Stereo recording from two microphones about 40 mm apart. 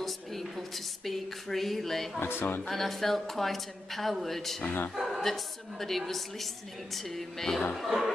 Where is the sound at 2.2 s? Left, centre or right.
Left.